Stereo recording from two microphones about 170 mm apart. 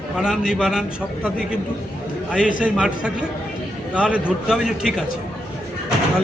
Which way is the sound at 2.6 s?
5° right (ahead or behind).